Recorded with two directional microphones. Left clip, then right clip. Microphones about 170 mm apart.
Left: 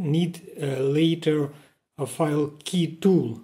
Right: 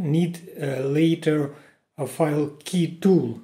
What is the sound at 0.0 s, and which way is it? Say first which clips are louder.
Speech: right 2 dB; 25° left (ahead or behind).